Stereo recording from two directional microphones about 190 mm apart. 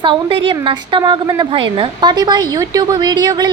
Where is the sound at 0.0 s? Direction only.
25° right (ahead or behind).